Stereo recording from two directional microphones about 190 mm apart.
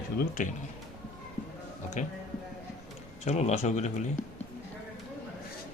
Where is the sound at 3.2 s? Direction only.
35° left (ahead or behind).